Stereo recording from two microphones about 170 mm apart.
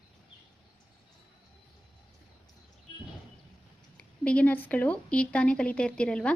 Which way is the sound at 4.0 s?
5° left (ahead or behind).